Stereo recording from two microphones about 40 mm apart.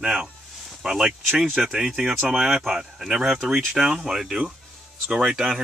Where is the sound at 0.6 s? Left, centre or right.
Centre.